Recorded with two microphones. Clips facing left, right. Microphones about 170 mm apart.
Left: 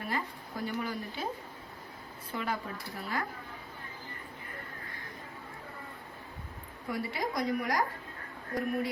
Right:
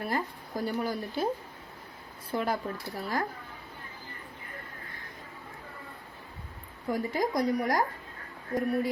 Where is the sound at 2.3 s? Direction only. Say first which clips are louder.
Right 5 dB; 40° right (ahead or behind).